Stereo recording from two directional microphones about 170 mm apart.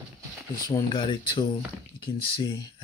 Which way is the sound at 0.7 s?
25° left (ahead or behind).